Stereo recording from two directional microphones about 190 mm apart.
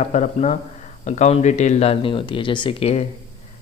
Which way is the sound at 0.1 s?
35° left (ahead or behind).